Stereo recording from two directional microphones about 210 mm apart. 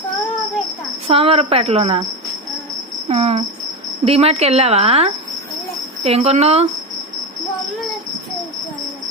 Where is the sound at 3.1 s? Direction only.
30° right (ahead or behind).